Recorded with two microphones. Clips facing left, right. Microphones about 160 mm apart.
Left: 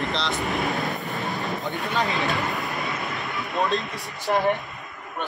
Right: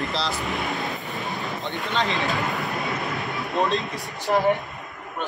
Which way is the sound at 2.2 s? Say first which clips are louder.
Even; centre (ahead or behind).